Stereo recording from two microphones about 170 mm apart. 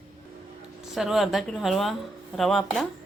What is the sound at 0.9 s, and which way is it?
A woman's voice, centre (ahead or behind).